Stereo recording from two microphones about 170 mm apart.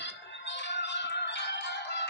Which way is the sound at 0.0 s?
90° left.